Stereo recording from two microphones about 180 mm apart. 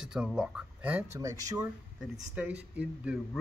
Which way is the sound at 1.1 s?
20° right (ahead or behind).